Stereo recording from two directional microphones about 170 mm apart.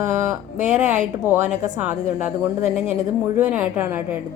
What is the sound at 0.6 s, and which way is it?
Speech, 45° right (ahead or behind).